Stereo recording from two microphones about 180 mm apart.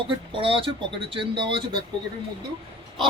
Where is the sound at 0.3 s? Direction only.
30° right (ahead or behind).